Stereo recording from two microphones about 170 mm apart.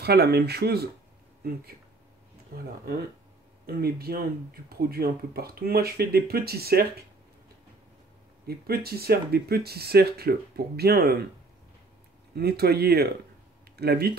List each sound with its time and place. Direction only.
0.0 s speech: 70° right (ahead or behind)
2.5 s speech: 60° right (ahead or behind)
8.5 s speech: 65° right (ahead or behind)
12.4 s speech: 65° right (ahead or behind)